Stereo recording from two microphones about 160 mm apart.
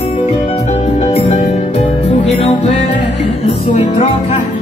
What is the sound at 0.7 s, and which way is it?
Music, 45° left (ahead or behind).